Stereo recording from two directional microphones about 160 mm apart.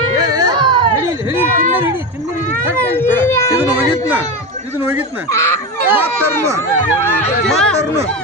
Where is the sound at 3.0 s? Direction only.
15° left (ahead or behind).